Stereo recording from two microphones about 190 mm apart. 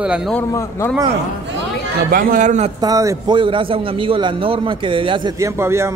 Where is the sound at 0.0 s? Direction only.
5° right (ahead or behind).